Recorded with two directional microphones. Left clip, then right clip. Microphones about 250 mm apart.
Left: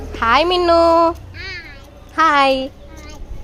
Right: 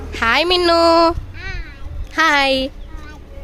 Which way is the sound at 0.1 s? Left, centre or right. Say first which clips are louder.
Left 1 dB; centre.